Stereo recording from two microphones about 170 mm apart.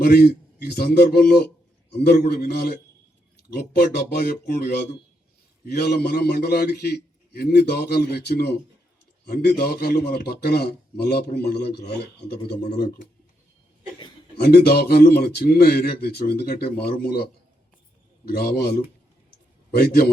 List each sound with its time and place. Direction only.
0.0 s a man's voice: 65° left (ahead or behind)
14.3 s a man's voice: 65° left (ahead or behind)
18.3 s speech: 65° left (ahead or behind)